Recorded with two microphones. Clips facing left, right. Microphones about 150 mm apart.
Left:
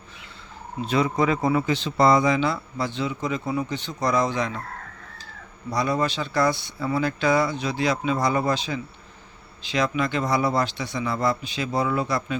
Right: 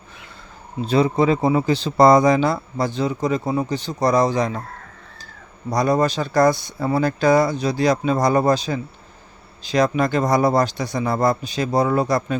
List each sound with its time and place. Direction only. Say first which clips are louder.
0.8 s speech: right 5 dB; 35° right (ahead or behind)
5.7 s speech: right 6 dB; 40° right (ahead or behind)